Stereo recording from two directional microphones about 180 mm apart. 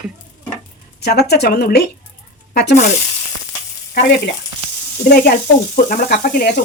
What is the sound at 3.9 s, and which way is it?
Speech, 65° left (ahead or behind).